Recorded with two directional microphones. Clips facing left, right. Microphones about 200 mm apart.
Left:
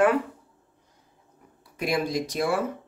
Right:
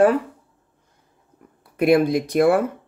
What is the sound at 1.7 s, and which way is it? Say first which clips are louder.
Speech: right 10 dB; 55° right (ahead or behind).